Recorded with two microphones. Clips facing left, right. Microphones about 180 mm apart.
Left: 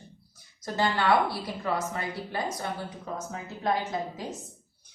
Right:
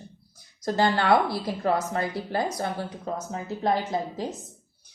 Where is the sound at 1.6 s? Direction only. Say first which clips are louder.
Right 5 dB; 40° right (ahead or behind).